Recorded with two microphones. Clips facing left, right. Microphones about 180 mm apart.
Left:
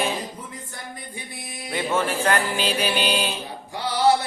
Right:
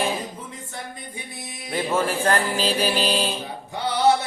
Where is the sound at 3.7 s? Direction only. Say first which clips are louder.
Even; 20° right (ahead or behind).